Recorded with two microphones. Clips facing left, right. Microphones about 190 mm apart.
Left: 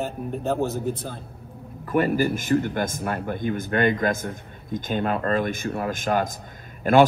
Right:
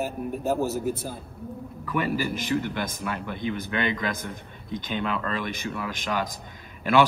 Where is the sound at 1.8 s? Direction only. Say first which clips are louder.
Left 6 dB; 50° left (ahead or behind).